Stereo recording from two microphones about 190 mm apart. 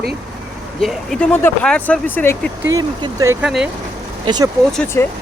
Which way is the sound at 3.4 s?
5° right (ahead or behind).